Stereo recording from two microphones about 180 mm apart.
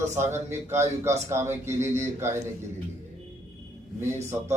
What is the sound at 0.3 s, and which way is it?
A man's voice, 15° right (ahead or behind).